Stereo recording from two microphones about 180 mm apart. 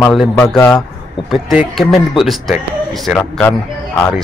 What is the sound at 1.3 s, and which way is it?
Speech, centre (ahead or behind).